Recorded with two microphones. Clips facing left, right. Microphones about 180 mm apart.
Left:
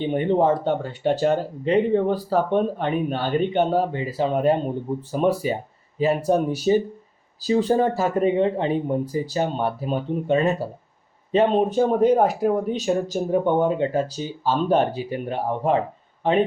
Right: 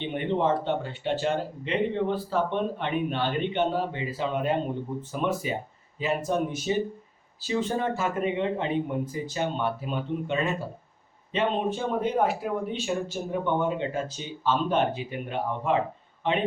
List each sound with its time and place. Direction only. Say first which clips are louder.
0.0 s speech: left 6 dB; 40° left (ahead or behind)